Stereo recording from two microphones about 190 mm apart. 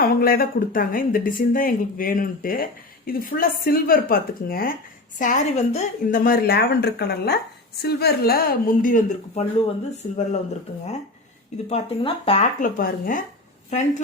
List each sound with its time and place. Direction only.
0.0 s speech: 50° left (ahead or behind)
5.2 s a woman's voice: 40° left (ahead or behind)
6.2 s a woman's voice: 50° left (ahead or behind)
11.7 s a woman's voice: 30° left (ahead or behind)
12.5 s a woman's voice: 45° left (ahead or behind)